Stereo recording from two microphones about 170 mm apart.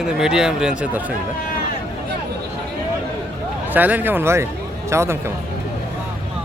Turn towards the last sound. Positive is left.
turn(degrees=-15)  # may be behind; listen again after turning